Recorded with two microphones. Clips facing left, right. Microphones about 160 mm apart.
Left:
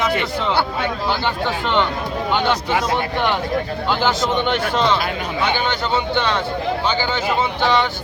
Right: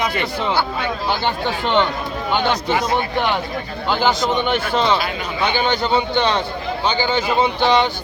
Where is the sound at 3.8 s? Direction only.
10° right (ahead or behind).